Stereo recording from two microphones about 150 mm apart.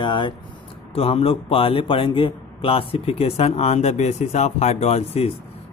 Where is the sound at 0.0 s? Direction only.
30° left (ahead or behind).